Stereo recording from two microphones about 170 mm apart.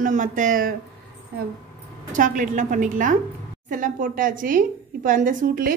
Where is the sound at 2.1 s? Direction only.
50° right (ahead or behind).